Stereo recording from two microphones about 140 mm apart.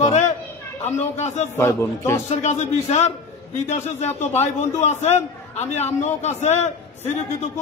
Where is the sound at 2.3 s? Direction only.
55° left (ahead or behind).